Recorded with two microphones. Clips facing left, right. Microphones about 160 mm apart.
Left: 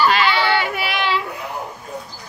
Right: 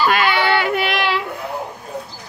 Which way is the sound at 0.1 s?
55° right (ahead or behind).